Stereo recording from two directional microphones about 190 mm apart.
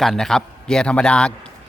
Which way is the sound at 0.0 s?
Centre (ahead or behind).